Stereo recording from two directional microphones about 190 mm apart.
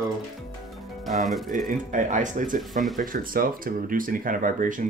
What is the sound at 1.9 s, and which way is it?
Speech, 40° right (ahead or behind).